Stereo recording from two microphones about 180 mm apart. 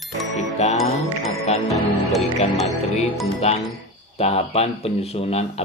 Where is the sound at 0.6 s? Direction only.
40° left (ahead or behind).